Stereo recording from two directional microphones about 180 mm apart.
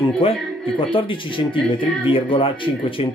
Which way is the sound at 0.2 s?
30° left (ahead or behind).